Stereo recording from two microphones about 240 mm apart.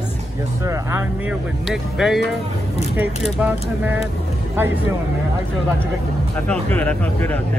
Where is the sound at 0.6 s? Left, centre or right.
Centre.